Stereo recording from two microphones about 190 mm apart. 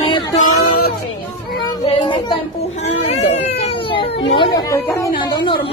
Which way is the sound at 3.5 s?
30° left (ahead or behind).